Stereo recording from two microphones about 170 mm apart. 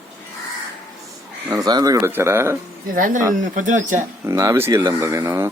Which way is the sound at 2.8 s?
55° right (ahead or behind).